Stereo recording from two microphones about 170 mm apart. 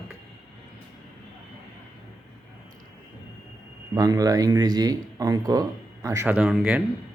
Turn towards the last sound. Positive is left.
turn(degrees=-5)  # may be behind; listen again after turning